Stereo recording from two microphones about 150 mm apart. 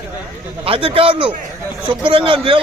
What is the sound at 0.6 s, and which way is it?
A man's voice, 40° right (ahead or behind).